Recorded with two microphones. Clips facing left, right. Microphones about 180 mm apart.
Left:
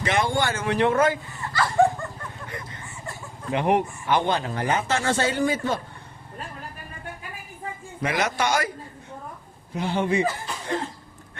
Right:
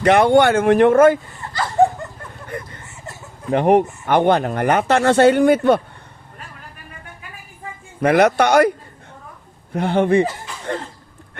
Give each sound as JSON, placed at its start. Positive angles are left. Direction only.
{"t": 0.0, "sound": "speech", "side_deg": -65}
{"t": 1.5, "sound": "dog", "side_deg": -25}
{"t": 3.5, "sound": "speech", "side_deg": -50}
{"t": 8.0, "sound": "speech", "side_deg": -60}
{"t": 9.7, "sound": "speech", "side_deg": -60}